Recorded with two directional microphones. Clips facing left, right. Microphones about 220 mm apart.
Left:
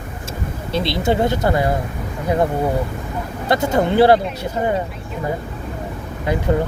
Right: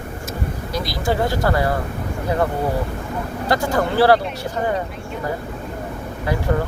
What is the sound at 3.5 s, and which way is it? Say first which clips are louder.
Speech: left 3 dB; 20° left (ahead or behind).